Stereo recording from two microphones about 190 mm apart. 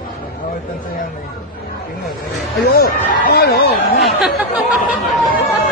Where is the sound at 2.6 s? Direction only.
50° left (ahead or behind).